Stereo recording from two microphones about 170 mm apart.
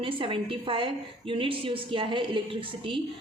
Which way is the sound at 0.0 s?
30° right (ahead or behind).